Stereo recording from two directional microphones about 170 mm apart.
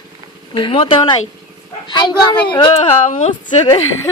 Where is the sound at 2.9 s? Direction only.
40° left (ahead or behind).